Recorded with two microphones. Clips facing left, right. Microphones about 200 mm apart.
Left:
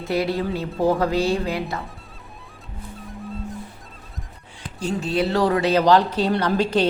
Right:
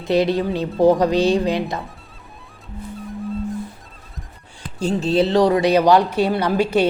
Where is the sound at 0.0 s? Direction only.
20° right (ahead or behind).